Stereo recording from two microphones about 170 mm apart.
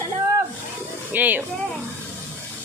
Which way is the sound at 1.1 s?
10° right (ahead or behind).